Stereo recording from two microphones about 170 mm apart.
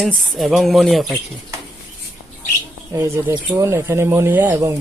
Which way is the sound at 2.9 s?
15° right (ahead or behind).